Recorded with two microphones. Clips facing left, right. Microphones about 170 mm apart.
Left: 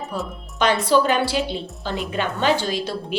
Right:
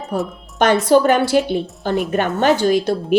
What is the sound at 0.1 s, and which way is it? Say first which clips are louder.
A woman's voice: right 11 dB; 55° right (ahead or behind).